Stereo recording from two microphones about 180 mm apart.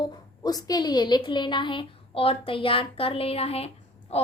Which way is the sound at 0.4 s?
20° left (ahead or behind).